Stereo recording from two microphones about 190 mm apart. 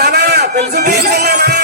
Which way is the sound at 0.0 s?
60° right (ahead or behind).